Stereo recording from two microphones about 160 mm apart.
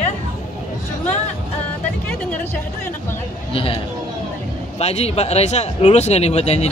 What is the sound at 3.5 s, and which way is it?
Speech, 35° left (ahead or behind).